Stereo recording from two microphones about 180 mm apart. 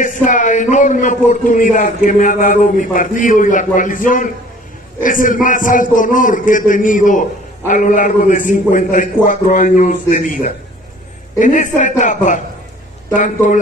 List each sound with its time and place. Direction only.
0.0 s a man's voice: 45° left (ahead or behind)